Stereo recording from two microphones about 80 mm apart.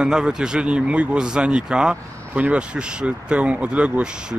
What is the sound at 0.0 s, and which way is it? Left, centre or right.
Speech, centre.